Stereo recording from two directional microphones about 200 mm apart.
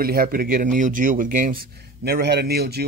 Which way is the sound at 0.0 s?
45° right (ahead or behind).